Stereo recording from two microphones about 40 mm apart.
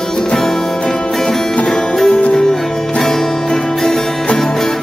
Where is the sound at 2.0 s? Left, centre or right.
Left.